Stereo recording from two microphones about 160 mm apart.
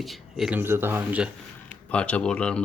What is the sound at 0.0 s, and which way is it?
Speech, centre (ahead or behind).